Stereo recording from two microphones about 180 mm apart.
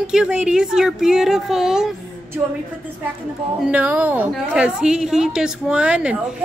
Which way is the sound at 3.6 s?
10° right (ahead or behind).